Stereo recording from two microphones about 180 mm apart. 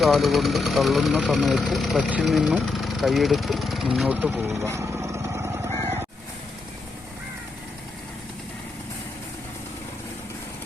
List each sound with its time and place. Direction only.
0.0 s speech: centre (ahead or behind)
4.7 s vehicle: 15° right (ahead or behind)